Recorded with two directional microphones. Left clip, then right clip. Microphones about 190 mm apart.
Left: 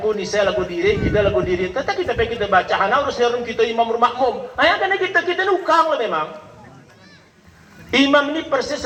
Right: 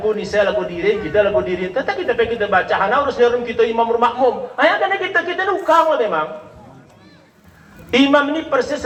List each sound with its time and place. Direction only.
0.0 s a man's voice: 25° left (ahead or behind)
7.9 s a man's voice: 25° left (ahead or behind)